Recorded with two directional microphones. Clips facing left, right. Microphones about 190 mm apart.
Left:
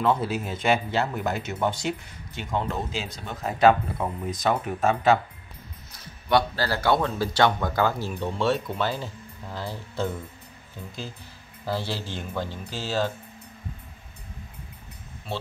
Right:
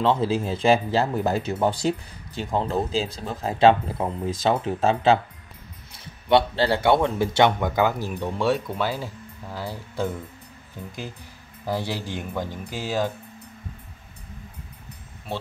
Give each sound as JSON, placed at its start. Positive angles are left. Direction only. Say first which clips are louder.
{"t": 0.0, "sound": "speech", "louder": "right 3 dB", "side_deg": -30}
{"t": 6.2, "sound": "speech", "louder": "right 4 dB", "side_deg": -25}
{"t": 11.6, "sound": "speech", "louder": "right 2 dB", "side_deg": -15}